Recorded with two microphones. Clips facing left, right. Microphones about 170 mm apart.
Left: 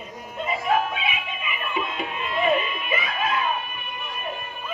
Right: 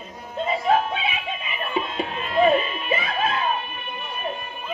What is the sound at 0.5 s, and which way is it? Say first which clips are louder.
Music: right 2 dB; 30° right (ahead or behind).